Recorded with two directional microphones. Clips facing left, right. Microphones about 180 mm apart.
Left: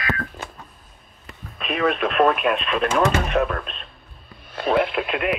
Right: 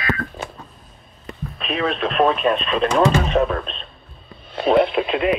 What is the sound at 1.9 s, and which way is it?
Radio, 10° left (ahead or behind).